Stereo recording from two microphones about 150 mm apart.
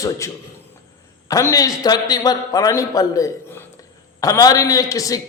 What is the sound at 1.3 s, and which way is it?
A man's voice, 20° left (ahead or behind).